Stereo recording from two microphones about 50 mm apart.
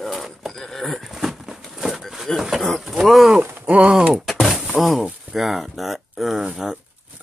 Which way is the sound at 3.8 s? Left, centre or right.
Centre.